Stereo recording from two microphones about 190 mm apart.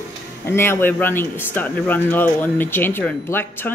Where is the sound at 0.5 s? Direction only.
10° left (ahead or behind).